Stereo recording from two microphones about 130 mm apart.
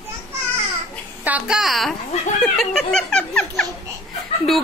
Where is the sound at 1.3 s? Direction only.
10° right (ahead or behind).